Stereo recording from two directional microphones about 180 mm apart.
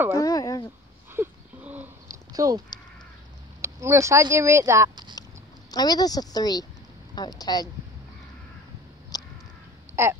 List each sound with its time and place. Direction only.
0.2 s speech: 20° left (ahead or behind)
1.1 s a sound: 10° right (ahead or behind)
2.3 s speech: 20° right (ahead or behind)
3.6 s speech: 15° right (ahead or behind)
5.7 s speech: 20° left (ahead or behind)
9.1 s crow: 20° left (ahead or behind)
9.9 s a sound: 15° right (ahead or behind)